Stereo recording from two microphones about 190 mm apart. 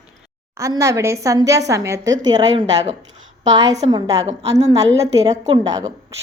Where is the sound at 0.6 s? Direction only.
15° right (ahead or behind).